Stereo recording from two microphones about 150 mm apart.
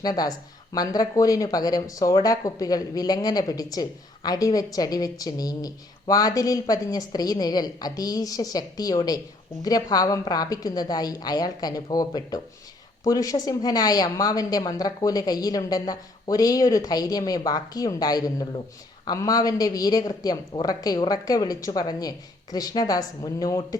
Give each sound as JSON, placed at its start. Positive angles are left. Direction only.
{"t": 0.0, "sound": "speech", "side_deg": 25}